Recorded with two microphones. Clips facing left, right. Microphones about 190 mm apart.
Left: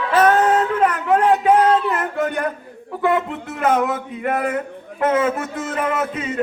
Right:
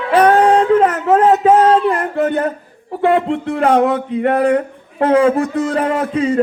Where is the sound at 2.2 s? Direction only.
20° right (ahead or behind).